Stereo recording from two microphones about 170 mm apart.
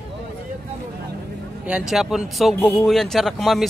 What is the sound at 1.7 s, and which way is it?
Speech, 5° right (ahead or behind).